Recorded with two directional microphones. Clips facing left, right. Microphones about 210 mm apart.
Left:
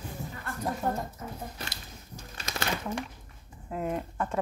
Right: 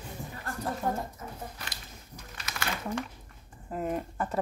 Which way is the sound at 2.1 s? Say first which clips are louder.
Left 4 dB; 30° left (ahead or behind).